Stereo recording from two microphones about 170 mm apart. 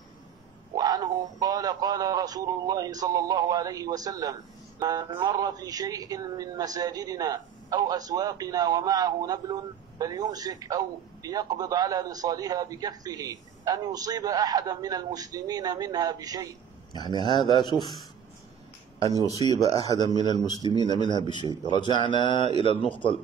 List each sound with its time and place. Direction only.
0.7 s speech: 20° right (ahead or behind)
16.9 s a man's voice: 25° left (ahead or behind)
19.5 s a man's voice: 25° left (ahead or behind)